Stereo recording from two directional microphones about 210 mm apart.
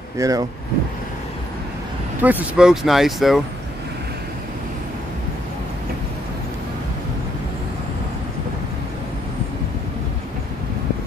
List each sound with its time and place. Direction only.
0.2 s speech: 15° right (ahead or behind)
2.2 s speech: 5° right (ahead or behind)